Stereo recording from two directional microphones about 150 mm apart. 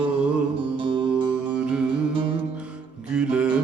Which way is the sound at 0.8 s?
35° right (ahead or behind).